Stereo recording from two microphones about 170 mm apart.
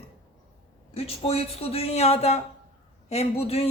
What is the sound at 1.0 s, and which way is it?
Speech, 35° left (ahead or behind).